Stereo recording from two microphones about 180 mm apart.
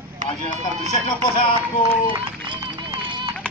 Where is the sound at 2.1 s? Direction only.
25° right (ahead or behind).